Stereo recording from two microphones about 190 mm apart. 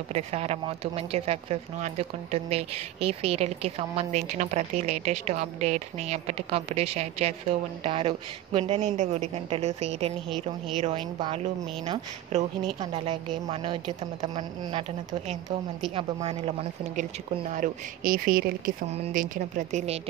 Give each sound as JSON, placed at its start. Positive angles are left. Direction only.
{"t": 0.1, "sound": "speech", "side_deg": -35}
{"t": 11.1, "sound": "a woman's voice", "side_deg": -30}
{"t": 17.5, "sound": "speech", "side_deg": -45}
{"t": 18.9, "sound": "speech", "side_deg": -40}